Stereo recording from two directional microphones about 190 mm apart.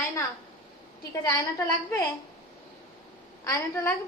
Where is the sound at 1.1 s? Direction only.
15° left (ahead or behind).